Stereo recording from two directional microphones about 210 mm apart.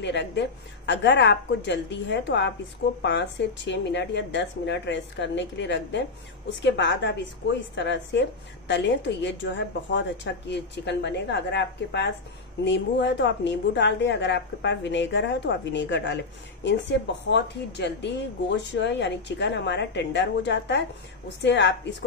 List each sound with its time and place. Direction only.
0.0 s a woman's voice: 55° left (ahead or behind)